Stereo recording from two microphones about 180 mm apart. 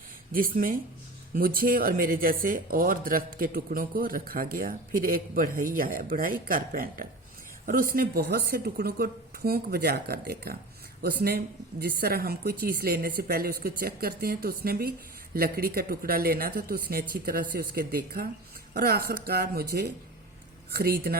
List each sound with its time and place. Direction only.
0.3 s speech: 50° right (ahead or behind)